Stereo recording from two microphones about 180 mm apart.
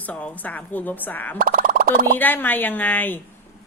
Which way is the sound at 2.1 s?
10° left (ahead or behind).